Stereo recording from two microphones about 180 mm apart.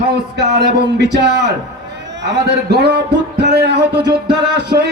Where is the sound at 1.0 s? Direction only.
70° right (ahead or behind).